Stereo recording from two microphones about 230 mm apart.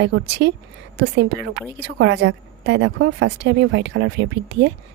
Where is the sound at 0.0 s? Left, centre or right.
Right.